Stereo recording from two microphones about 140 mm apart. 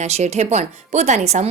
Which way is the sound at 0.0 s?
55° right (ahead or behind).